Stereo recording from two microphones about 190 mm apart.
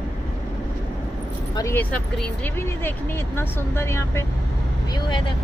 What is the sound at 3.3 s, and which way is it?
Speech, 15° left (ahead or behind).